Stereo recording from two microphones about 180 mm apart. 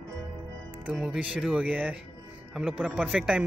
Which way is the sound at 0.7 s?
10° right (ahead or behind).